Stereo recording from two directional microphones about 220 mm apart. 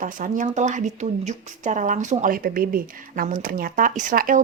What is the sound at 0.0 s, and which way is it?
Speech, 35° right (ahead or behind).